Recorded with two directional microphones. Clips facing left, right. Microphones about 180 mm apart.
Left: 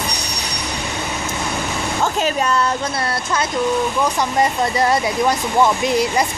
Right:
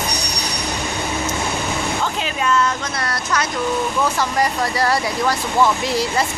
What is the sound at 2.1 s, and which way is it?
Speech, 40° left (ahead or behind).